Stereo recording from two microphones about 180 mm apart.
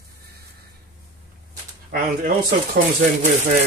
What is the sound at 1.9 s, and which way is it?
Speech, 55° right (ahead or behind).